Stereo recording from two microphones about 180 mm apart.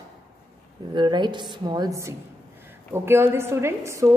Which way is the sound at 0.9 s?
25° right (ahead or behind).